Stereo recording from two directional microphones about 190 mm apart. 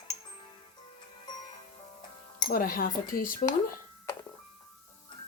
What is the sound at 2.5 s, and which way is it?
Speech, 50° left (ahead or behind).